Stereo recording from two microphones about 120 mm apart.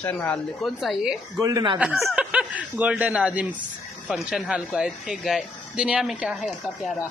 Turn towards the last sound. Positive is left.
turn(degrees=0)  # may be behind; listen again after turning